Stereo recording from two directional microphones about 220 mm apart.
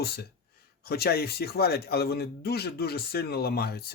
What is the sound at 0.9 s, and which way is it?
Speech, 45° left (ahead or behind).